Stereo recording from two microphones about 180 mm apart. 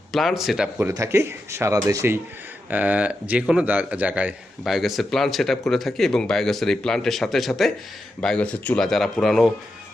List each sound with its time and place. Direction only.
0.1 s speech: centre (ahead or behind)
0.9 s speech: 15° right (ahead or behind); by 9.5 s centre (ahead or behind)